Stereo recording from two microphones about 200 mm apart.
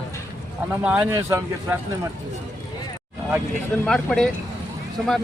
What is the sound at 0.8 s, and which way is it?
Speech, 10° right (ahead or behind).